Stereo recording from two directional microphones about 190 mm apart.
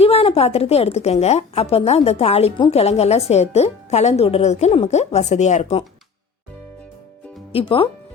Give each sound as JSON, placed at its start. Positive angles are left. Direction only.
{"t": 0.0, "sound": "speech", "side_deg": 30}
{"t": 7.5, "sound": "speech", "side_deg": 30}